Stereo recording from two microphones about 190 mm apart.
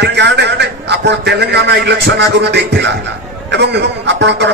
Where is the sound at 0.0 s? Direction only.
65° right (ahead or behind).